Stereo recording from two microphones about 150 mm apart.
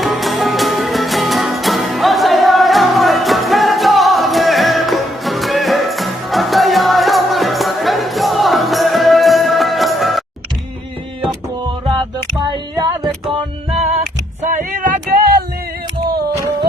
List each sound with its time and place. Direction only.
0.0 s music: centre (ahead or behind)
12.7 s music: 25° right (ahead or behind)
13.3 s music: 45° right (ahead or behind)
14.4 s a sound: 60° right (ahead or behind)